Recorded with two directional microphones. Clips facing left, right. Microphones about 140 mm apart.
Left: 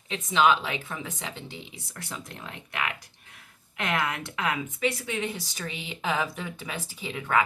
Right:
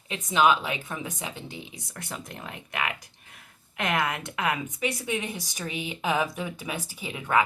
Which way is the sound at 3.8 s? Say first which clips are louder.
Right 1 dB; 15° right (ahead or behind).